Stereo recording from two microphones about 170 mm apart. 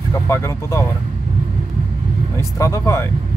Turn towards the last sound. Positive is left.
turn(degrees=20)  # may be behind; listen again after turning